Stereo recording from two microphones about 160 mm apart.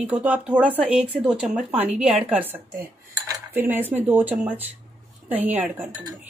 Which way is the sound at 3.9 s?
10° right (ahead or behind).